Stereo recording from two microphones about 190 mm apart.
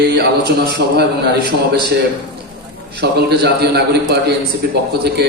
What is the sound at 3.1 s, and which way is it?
A man's voice, 55° right (ahead or behind).